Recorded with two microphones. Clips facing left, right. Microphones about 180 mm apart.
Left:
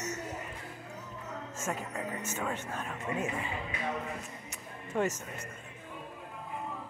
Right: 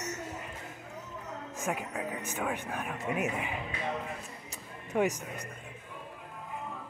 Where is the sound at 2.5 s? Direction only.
15° right (ahead or behind).